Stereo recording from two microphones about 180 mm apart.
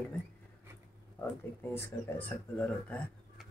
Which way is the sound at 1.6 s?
10° left (ahead or behind).